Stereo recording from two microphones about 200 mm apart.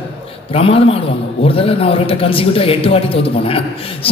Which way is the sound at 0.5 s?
30° left (ahead or behind).